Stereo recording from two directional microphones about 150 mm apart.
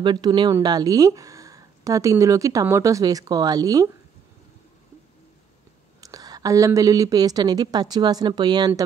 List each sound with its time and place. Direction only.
0.0 s speech: 30° right (ahead or behind)
5.9 s speech: 25° right (ahead or behind)